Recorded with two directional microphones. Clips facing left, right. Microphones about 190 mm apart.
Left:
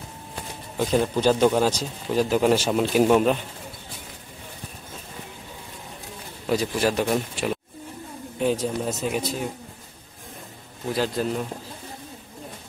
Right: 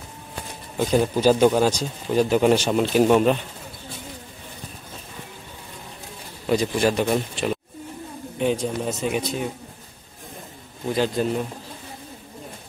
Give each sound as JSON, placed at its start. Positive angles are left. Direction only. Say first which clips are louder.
{"t": 0.7, "sound": "a man's voice", "louder": "right 2 dB", "side_deg": -5}
{"t": 6.4, "sound": "a man's voice", "louder": "right 2 dB", "side_deg": 5}
{"t": 10.9, "sound": "a man's voice", "louder": "right 2 dB", "side_deg": 0}